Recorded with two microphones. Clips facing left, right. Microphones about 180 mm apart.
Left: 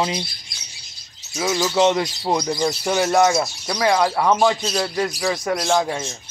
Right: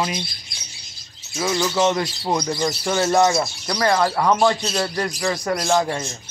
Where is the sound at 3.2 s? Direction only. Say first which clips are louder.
Left 1 dB; 5° left (ahead or behind).